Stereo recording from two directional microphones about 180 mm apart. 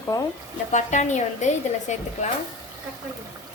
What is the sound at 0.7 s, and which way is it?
A woman's voice, 40° left (ahead or behind).